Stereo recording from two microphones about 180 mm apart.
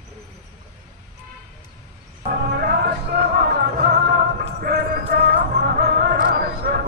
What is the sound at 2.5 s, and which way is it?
Music, 60° right (ahead or behind).